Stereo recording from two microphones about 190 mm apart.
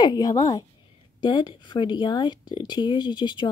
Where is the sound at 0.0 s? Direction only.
20° left (ahead or behind).